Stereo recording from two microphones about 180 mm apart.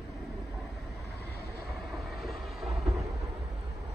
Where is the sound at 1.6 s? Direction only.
Centre (ahead or behind).